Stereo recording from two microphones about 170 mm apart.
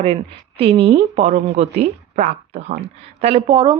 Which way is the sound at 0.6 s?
35° right (ahead or behind).